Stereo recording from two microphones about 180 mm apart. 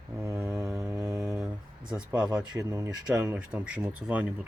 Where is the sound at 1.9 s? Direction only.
5° right (ahead or behind).